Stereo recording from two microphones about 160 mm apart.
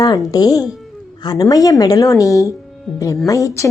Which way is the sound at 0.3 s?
25° left (ahead or behind).